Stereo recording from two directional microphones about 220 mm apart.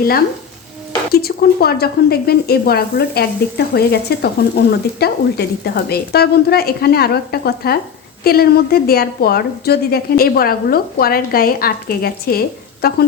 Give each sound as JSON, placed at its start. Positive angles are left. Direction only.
{"t": 1.1, "sound": "a woman's voice", "side_deg": 45}